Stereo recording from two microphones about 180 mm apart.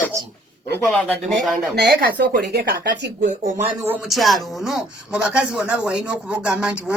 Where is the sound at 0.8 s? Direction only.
Centre (ahead or behind).